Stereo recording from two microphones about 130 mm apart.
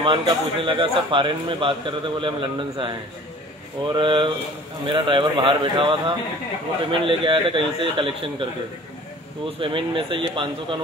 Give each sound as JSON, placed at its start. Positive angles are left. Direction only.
{"t": 0.0, "sound": "a man's voice", "side_deg": -40}
{"t": 9.6, "sound": "a man's voice", "side_deg": -40}